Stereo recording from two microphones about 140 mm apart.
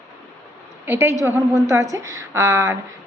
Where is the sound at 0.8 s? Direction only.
15° right (ahead or behind).